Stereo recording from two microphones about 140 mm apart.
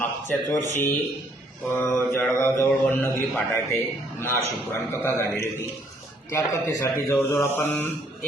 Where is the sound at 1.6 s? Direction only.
15° left (ahead or behind).